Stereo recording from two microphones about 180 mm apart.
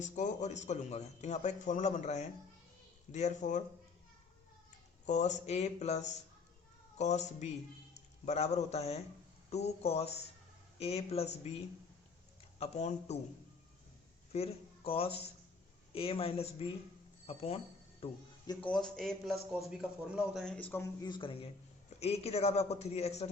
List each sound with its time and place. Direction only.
0.0 s speech: 40° left (ahead or behind)
5.0 s speech: 40° left (ahead or behind)
12.5 s speech: 35° left (ahead or behind)
14.3 s speech: 35° left (ahead or behind)
18.6 s a man's voice: 5° left (ahead or behind); by 23.3 s 35° left (ahead or behind)